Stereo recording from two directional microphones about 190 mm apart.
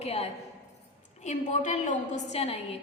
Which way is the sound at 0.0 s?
35° left (ahead or behind).